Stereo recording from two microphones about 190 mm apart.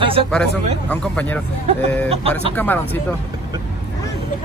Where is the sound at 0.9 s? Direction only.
5° left (ahead or behind).